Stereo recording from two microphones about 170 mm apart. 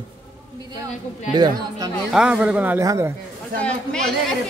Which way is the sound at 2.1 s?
5° right (ahead or behind).